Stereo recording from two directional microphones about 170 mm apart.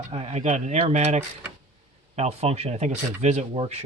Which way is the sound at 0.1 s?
35° right (ahead or behind).